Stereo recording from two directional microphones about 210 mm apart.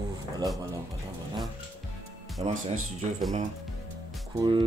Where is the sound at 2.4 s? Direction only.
25° right (ahead or behind).